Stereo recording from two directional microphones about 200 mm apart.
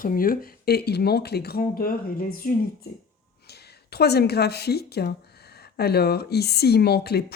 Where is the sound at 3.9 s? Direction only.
55° left (ahead or behind).